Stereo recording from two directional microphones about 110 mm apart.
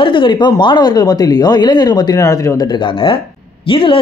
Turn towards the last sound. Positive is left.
turn(degrees=50)  # may be behind; listen again after turning